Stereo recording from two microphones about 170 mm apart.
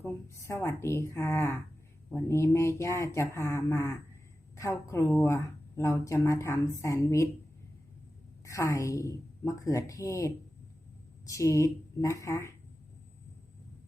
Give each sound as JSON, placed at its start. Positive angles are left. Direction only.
{"t": 0.0, "sound": "a woman's voice", "side_deg": 15}
{"t": 8.4, "sound": "a woman's voice", "side_deg": 20}